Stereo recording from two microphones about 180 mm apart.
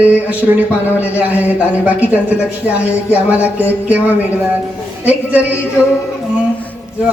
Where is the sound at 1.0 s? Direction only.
10° right (ahead or behind).